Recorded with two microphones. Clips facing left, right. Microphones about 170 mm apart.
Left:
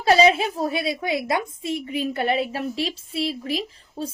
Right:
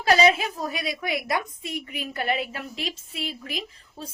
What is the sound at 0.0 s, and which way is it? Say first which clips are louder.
A woman's voice: left 3 dB; 30° left (ahead or behind).